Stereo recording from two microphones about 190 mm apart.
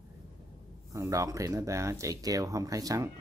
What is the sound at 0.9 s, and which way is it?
Speech, 15° right (ahead or behind).